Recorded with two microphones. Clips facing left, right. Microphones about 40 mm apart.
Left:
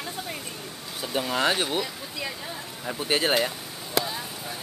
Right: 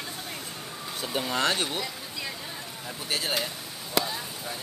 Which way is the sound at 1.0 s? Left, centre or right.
Centre.